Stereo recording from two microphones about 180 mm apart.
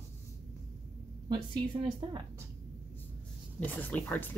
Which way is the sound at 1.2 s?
25° right (ahead or behind).